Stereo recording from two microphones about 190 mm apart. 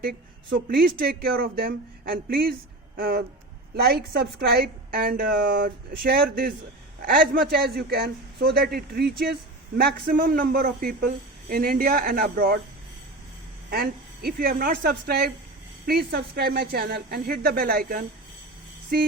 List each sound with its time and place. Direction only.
0.0 s a man's voice: 50° right (ahead or behind)
13.7 s a man's voice: 55° right (ahead or behind)
18.9 s a sound: 55° right (ahead or behind)